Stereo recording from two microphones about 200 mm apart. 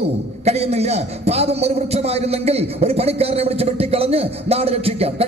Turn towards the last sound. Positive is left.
turn(degrees=-30)  # may be behind; listen again after turning